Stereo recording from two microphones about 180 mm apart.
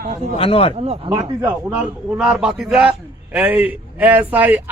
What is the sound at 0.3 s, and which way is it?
Speech, 30° left (ahead or behind).